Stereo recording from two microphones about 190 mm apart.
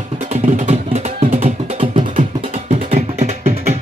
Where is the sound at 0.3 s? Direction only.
35° right (ahead or behind).